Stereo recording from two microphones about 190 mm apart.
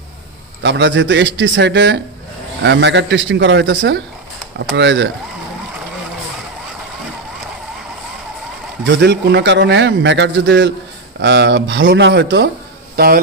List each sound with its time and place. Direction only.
0.6 s a man's voice: 65° right (ahead or behind)
8.8 s a man's voice: 65° right (ahead or behind)